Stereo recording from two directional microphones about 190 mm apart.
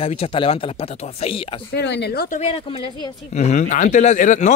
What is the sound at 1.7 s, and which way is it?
Speech, 65° left (ahead or behind).